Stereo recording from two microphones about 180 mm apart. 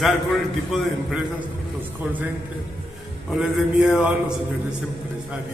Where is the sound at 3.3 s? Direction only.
5° right (ahead or behind).